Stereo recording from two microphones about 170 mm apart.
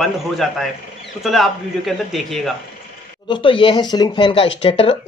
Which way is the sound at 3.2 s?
30° left (ahead or behind).